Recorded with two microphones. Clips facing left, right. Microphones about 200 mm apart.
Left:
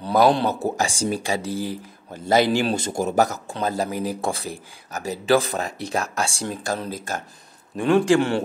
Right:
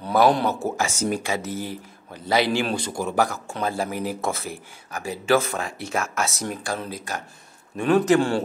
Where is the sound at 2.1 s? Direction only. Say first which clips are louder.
Left 3 dB; 45° left (ahead or behind).